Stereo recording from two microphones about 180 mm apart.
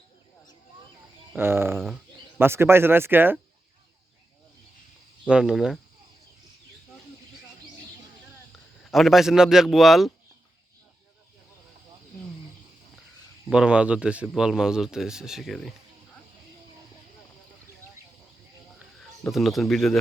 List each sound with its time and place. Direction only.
1.4 s speech: 15° right (ahead or behind)
5.2 s a man's voice: 5° right (ahead or behind)
8.9 s a man's voice: centre (ahead or behind)
13.5 s a man's voice: 5° right (ahead or behind)
19.2 s a man's voice: centre (ahead or behind)